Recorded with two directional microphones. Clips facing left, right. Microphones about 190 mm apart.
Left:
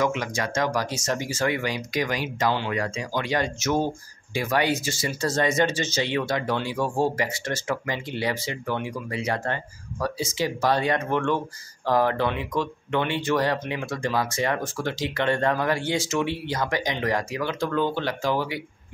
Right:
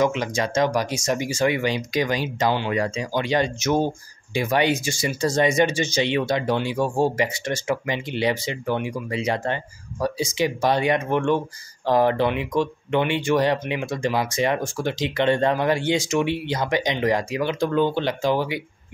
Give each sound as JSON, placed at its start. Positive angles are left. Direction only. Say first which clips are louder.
{"t": 0.0, "sound": "speech", "louder": "right 3 dB", "side_deg": -20}